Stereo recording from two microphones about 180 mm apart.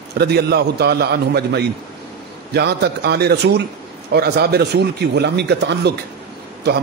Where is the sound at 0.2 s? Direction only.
65° right (ahead or behind).